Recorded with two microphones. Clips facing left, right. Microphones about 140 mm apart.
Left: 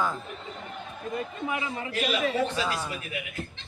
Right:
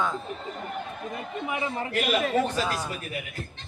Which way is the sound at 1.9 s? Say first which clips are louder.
Right 2 dB; 50° right (ahead or behind).